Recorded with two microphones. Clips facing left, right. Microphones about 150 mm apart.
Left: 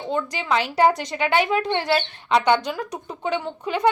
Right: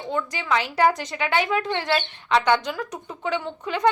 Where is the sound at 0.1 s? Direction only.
20° left (ahead or behind).